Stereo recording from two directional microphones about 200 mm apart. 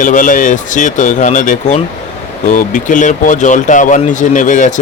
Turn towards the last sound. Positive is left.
turn(degrees=40)  # may be behind; listen again after turning